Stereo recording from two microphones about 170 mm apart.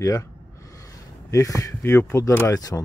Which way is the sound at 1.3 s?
20° left (ahead or behind).